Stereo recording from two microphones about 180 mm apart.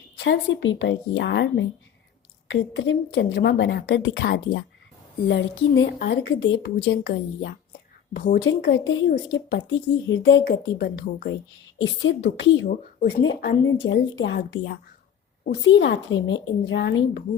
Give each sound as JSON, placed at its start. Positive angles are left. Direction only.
{"t": 0.2, "sound": "a woman's voice", "side_deg": 85}
{"t": 2.5, "sound": "a woman's voice", "side_deg": 90}
{"t": 5.3, "sound": "a woman's voice", "side_deg": 85}
{"t": 8.1, "sound": "a woman's voice", "side_deg": 55}
{"t": 8.4, "sound": "speech", "side_deg": 90}
{"t": 9.0, "sound": "a woman's voice", "side_deg": 60}
{"t": 11.8, "sound": "a woman's voice", "side_deg": 75}
{"t": 15.6, "sound": "speech", "side_deg": 90}